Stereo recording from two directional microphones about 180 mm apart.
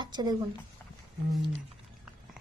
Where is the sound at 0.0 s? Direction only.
25° right (ahead or behind).